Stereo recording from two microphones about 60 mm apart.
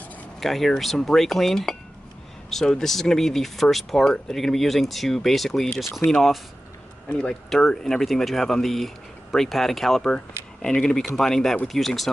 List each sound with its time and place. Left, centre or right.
0.4 s speech: centre
7.1 s speech: centre
7.4 s speech: centre